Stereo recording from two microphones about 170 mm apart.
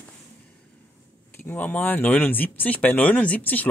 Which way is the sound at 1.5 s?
10° left (ahead or behind).